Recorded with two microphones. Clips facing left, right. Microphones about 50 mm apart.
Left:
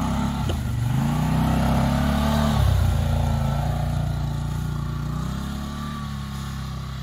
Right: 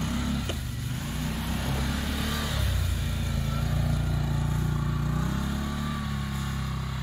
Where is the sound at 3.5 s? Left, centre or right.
Centre.